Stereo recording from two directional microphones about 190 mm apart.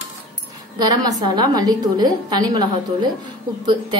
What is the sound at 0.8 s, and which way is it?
A woman's voice, 20° right (ahead or behind).